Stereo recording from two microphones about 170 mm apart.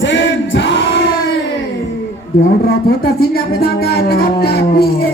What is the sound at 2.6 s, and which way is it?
Music, 65° left (ahead or behind).